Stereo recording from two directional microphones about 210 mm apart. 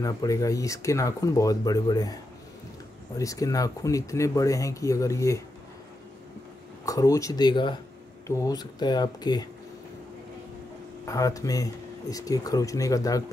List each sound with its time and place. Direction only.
0.0 s speech: 15° left (ahead or behind)
3.2 s speech: 15° left (ahead or behind)
6.9 s speech: 15° left (ahead or behind)
11.1 s speech: 15° left (ahead or behind)